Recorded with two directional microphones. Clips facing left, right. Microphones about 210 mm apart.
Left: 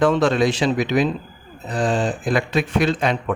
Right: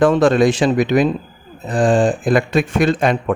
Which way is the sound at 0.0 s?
50° right (ahead or behind).